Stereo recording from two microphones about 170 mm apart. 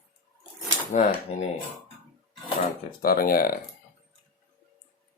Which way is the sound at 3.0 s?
60° left (ahead or behind).